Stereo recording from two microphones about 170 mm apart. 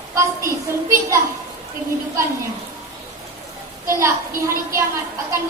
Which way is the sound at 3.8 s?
15° right (ahead or behind).